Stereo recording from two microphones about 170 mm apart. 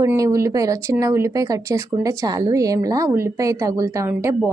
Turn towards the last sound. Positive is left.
turn(degrees=-15)  # may be behind; listen again after turning